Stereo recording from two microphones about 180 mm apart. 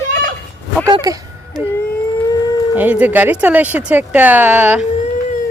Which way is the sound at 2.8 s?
10° right (ahead or behind).